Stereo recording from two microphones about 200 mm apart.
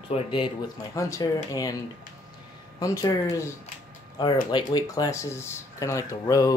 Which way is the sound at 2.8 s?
15° left (ahead or behind).